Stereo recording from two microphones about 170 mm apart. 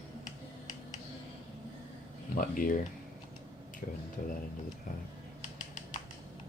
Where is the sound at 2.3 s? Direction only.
55° left (ahead or behind).